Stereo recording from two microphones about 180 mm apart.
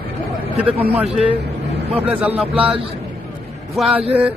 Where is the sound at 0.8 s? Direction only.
10° right (ahead or behind).